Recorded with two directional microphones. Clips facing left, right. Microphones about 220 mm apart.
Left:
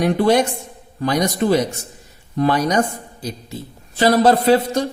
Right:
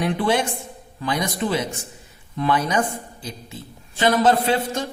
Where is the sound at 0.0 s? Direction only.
40° left (ahead or behind).